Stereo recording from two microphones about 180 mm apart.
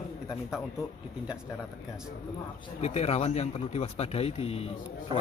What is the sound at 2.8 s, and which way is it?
A man's voice, 35° left (ahead or behind).